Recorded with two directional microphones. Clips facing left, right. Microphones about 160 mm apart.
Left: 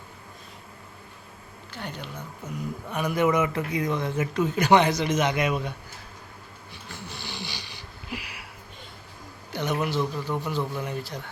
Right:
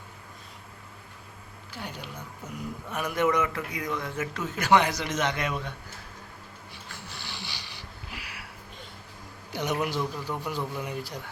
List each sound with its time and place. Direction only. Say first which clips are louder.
1.7 s a man's voice: left 2 dB; 10° right (ahead or behind)
3.5 s a man's voice: left 5 dB; 25° left (ahead or behind)
6.9 s a sound: left 5 dB; 20° left (ahead or behind)
9.5 s a man's voice: left 2 dB; 10° right (ahead or behind)